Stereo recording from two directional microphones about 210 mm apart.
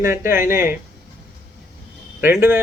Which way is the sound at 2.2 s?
10° right (ahead or behind).